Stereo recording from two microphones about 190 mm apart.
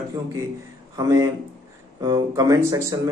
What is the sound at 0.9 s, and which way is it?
Speech, 15° right (ahead or behind).